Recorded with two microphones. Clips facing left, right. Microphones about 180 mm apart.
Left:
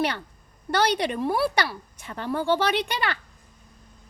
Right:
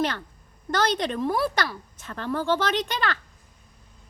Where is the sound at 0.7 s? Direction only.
10° left (ahead or behind).